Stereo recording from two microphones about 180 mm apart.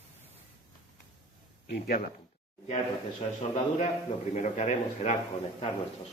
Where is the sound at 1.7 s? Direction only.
55° left (ahead or behind).